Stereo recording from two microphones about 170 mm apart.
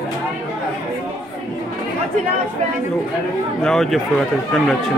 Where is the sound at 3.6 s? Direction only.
Centre (ahead or behind).